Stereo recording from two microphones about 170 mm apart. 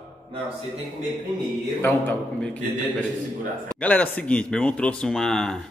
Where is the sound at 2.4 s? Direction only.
5° left (ahead or behind).